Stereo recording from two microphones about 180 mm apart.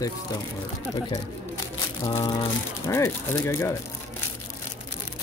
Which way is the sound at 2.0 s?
20° left (ahead or behind).